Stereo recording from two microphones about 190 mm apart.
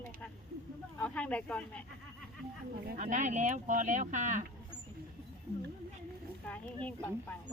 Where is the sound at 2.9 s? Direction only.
40° right (ahead or behind).